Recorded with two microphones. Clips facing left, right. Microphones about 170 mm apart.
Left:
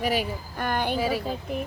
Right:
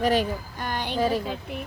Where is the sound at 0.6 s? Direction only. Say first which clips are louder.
Left 7 dB; 55° left (ahead or behind).